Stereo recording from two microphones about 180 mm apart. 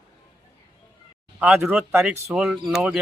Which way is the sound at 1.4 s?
10° right (ahead or behind).